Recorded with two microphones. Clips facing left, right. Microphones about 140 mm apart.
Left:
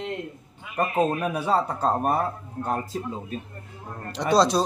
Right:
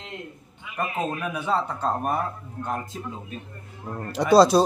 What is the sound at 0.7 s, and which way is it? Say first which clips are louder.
A man's voice: left 5 dB; 40° left (ahead or behind).